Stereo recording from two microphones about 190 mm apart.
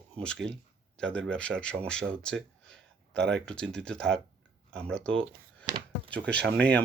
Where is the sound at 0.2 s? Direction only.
5° left (ahead or behind).